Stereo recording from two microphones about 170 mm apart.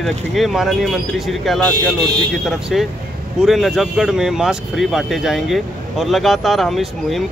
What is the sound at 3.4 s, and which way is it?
Speech, centre (ahead or behind).